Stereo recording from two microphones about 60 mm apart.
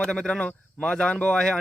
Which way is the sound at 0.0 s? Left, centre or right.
Centre.